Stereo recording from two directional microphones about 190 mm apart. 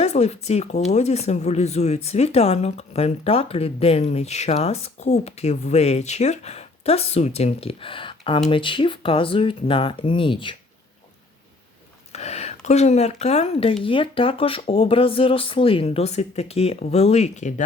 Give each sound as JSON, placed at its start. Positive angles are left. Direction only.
{"t": 0.0, "sound": "speech", "side_deg": 35}
{"t": 12.1, "sound": "speech", "side_deg": 35}